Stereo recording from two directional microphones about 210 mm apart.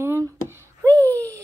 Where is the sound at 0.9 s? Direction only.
5° left (ahead or behind).